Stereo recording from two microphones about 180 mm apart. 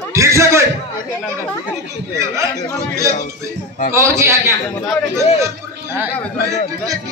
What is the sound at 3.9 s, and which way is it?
Speech, 15° right (ahead or behind).